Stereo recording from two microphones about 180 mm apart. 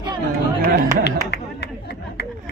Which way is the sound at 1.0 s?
70° left (ahead or behind).